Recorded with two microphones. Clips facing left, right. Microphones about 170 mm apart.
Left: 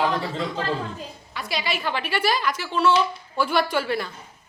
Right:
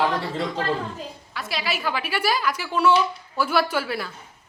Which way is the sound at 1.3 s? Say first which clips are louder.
Left 1 dB; centre (ahead or behind).